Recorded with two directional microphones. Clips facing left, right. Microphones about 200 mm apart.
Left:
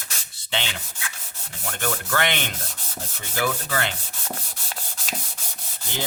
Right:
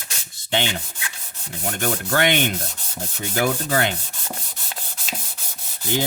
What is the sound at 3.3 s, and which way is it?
Rub, 45° right (ahead or behind).